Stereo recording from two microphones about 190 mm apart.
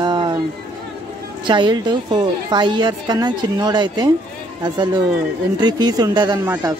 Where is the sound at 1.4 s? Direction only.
25° right (ahead or behind).